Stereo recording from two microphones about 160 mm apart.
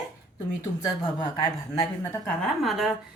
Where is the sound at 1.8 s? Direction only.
15° left (ahead or behind); by 2.9 s centre (ahead or behind).